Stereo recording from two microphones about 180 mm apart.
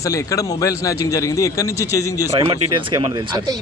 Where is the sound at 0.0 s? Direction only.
20° left (ahead or behind).